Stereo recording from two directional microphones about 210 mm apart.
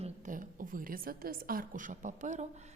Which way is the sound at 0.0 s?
35° right (ahead or behind).